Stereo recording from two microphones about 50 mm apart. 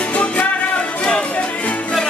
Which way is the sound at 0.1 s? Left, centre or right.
Left.